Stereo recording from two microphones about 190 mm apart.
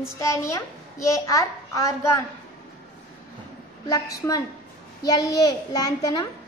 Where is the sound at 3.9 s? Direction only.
20° left (ahead or behind).